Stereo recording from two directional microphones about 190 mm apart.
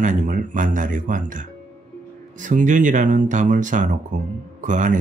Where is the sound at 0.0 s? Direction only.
40° right (ahead or behind).